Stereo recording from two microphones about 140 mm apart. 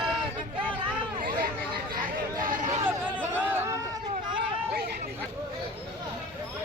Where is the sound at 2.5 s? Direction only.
65° right (ahead or behind).